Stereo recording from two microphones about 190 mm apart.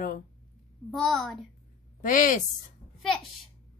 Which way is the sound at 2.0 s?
45° left (ahead or behind).